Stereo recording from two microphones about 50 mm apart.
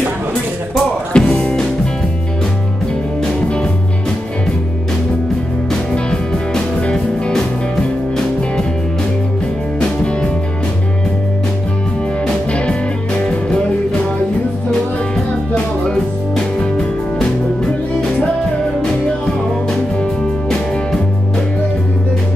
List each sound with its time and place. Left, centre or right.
1.1 s music: centre
5.7 s music: centre
13.2 s music: left
14.7 s music: centre
19.7 s music: centre